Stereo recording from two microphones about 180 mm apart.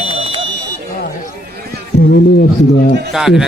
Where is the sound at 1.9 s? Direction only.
60° left (ahead or behind).